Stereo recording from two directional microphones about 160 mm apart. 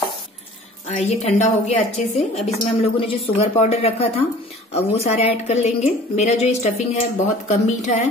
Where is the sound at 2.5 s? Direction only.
35° left (ahead or behind).